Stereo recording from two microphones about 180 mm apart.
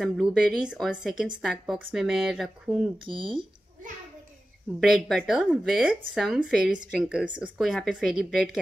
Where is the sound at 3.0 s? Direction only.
25° right (ahead or behind).